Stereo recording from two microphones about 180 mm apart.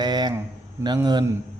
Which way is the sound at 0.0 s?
25° right (ahead or behind).